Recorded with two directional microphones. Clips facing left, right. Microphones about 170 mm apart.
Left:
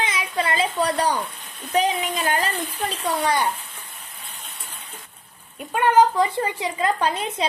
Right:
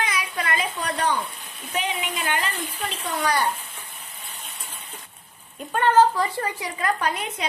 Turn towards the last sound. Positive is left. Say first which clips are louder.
# left 3 dB
turn(degrees=30)  # may be behind; listen again after turning